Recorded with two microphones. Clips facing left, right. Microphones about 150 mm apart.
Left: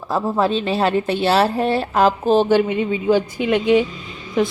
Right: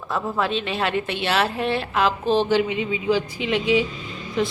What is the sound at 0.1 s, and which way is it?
A woman's voice, 35° left (ahead or behind).